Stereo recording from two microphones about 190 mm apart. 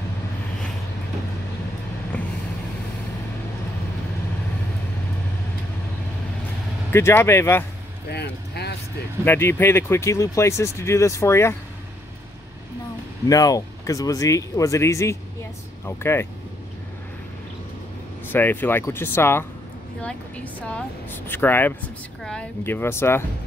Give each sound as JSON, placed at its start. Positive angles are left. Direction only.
{"t": 2.1, "sound": "vehicle", "side_deg": 10}
{"t": 6.9, "sound": "speech", "side_deg": 15}
{"t": 8.1, "sound": "a sound", "side_deg": 60}
{"t": 9.2, "sound": "speech", "side_deg": 10}
{"t": 13.3, "sound": "speech", "side_deg": 20}
{"t": 18.3, "sound": "speech", "side_deg": 10}